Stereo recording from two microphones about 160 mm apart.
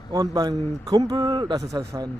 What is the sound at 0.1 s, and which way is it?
A man's voice, 25° right (ahead or behind).